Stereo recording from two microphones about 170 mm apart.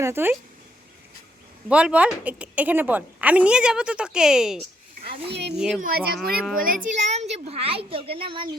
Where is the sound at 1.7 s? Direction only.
5° right (ahead or behind).